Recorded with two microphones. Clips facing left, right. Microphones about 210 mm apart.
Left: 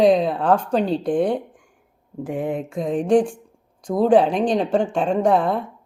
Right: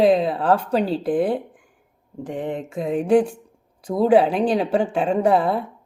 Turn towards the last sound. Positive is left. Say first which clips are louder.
# even
turn(degrees=-5)  # may be behind; listen again after turning